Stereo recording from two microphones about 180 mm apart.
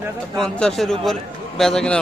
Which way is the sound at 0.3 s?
Centre (ahead or behind).